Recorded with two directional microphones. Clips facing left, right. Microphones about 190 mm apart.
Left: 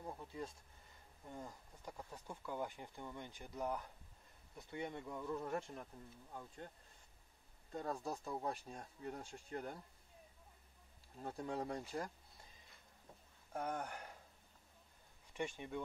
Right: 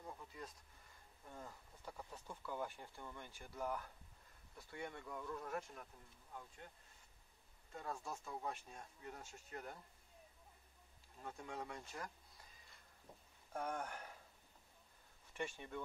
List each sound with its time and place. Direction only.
0.0 s a sound: 30° left (ahead or behind)
1.3 s speech: 15° left (ahead or behind)
7.7 s speech: 35° left (ahead or behind)
11.2 s speech: 35° left (ahead or behind)
11.9 s a sound: 30° left (ahead or behind)
13.5 s speech: 10° left (ahead or behind)
15.3 s speech: 15° left (ahead or behind)